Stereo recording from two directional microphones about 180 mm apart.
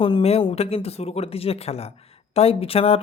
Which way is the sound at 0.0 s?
30° left (ahead or behind).